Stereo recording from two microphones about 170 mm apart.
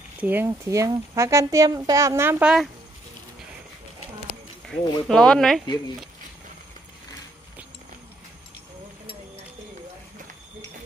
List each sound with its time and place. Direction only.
0.2 s speech: 10° right (ahead or behind)
4.6 s speech: 5° left (ahead or behind)